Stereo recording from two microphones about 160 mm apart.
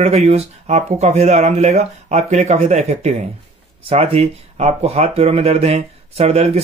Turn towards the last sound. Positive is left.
turn(degrees=-40)  # may be behind; listen again after turning